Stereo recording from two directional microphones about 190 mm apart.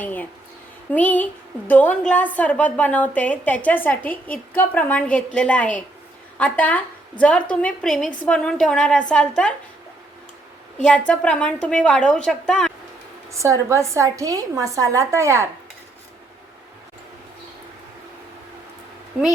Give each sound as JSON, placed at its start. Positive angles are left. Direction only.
{"t": 0.0, "sound": "a woman's voice", "side_deg": 10}
{"t": 10.8, "sound": "a woman's voice", "side_deg": 5}
{"t": 13.3, "sound": "a woman's voice", "side_deg": -15}